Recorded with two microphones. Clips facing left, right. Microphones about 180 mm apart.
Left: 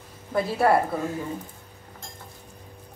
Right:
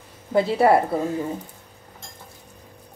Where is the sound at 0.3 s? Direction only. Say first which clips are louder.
Right 5 dB; 25° right (ahead or behind).